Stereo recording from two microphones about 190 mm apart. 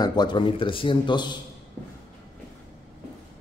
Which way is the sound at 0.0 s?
20° left (ahead or behind).